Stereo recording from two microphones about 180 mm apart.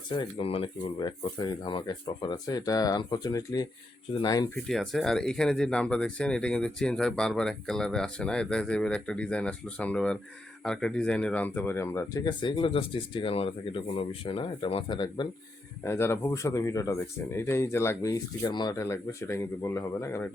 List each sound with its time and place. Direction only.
0.2 s speech: 30° left (ahead or behind)
4.7 s speech: centre (ahead or behind); by 15.3 s 25° left (ahead or behind)
15.8 s speech: 15° left (ahead or behind)